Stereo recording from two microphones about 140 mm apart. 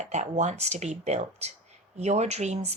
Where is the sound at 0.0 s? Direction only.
55° right (ahead or behind).